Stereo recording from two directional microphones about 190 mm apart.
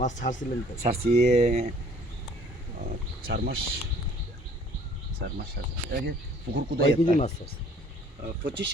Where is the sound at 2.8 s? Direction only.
50° right (ahead or behind).